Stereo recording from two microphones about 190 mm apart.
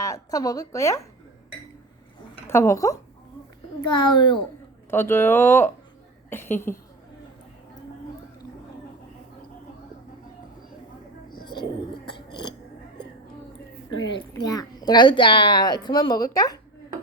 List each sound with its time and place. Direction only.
0.0 s a woman's voice: 20° left (ahead or behind)
2.5 s a woman's voice: 15° left (ahead or behind)
4.9 s a woman's voice: 10° left (ahead or behind)
11.3 s a sound: 25° left (ahead or behind)
13.9 s a woman's voice: 25° left (ahead or behind)